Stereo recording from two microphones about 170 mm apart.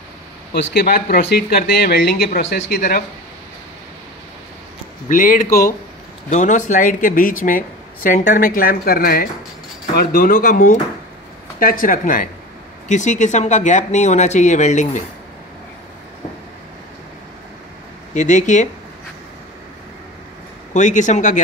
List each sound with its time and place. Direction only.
0.5 s speech: 65° left (ahead or behind)
5.0 s speech: 50° left (ahead or behind)
18.1 s speech: 45° left (ahead or behind)
20.7 s speech: 45° left (ahead or behind)